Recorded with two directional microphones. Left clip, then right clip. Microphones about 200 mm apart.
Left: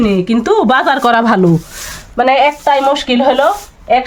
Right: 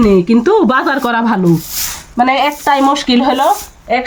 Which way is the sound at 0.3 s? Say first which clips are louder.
Even; 55° left (ahead or behind).